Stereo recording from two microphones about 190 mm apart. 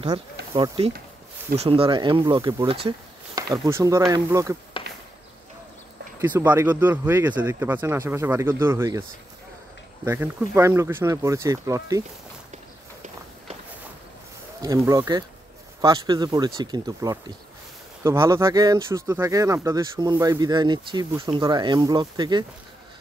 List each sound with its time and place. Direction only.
0.6 s speech: 30° right (ahead or behind)
6.2 s speech: 10° right (ahead or behind)
10.0 s speech: 10° right (ahead or behind)
14.6 s speech: 20° right (ahead or behind)